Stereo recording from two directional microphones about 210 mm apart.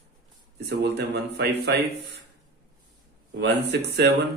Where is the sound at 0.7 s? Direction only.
50° right (ahead or behind).